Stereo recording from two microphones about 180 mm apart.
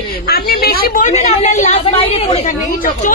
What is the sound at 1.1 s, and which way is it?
A woman's voice, 40° left (ahead or behind).